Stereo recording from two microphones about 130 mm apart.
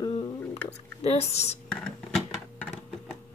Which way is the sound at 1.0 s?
55° left (ahead or behind).